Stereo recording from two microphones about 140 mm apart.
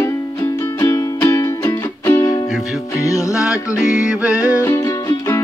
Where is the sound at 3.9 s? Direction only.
10° right (ahead or behind).